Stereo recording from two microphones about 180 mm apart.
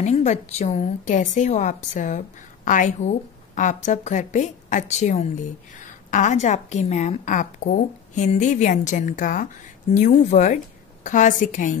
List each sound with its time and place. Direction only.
0.0 s a woman's voice: 40° left (ahead or behind)